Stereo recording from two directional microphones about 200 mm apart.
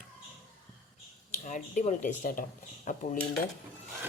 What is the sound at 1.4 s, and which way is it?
Speech, 35° left (ahead or behind).